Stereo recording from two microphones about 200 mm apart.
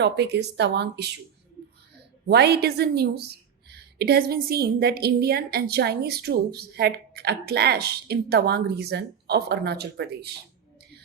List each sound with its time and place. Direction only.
0.0 s speech: 60° right (ahead or behind)
2.2 s a woman's voice: 55° right (ahead or behind)